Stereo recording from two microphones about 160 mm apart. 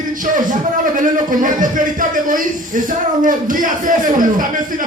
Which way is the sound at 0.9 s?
55° right (ahead or behind).